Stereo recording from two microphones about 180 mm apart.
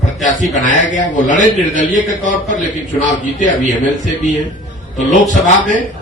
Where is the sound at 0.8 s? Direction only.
45° left (ahead or behind).